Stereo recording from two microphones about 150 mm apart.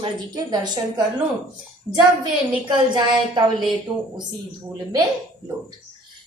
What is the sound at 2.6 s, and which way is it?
A woman's voice, 30° right (ahead or behind).